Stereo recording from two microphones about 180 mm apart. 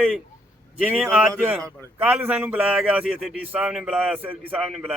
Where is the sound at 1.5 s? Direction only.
15° right (ahead or behind).